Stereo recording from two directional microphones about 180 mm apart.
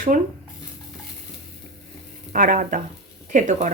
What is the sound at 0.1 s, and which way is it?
Speech, 45° right (ahead or behind).